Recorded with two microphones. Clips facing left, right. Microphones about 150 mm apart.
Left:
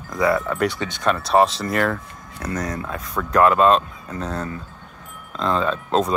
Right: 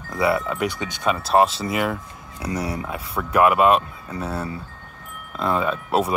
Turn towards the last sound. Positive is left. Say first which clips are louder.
# left 1 dB
turn(degrees=-10)  # may be behind; listen again after turning